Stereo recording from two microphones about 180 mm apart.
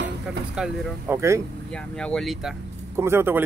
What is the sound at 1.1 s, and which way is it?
Speech, 15° right (ahead or behind).